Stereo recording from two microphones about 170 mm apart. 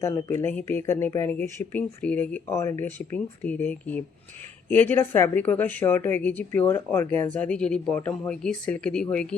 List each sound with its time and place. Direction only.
0.0 s speech: 15° left (ahead or behind)